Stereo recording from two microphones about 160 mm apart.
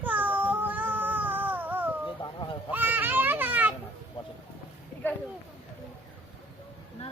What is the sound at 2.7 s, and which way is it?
Children playing, 10° right (ahead or behind).